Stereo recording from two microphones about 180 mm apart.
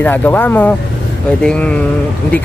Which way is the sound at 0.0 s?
10° left (ahead or behind).